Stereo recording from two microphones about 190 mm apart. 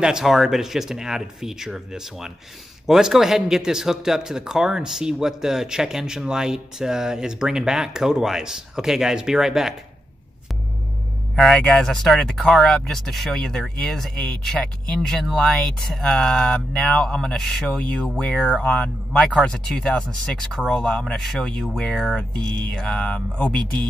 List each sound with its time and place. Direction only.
0.0 s speech: 5° right (ahead or behind)
11.3 s speech: centre (ahead or behind)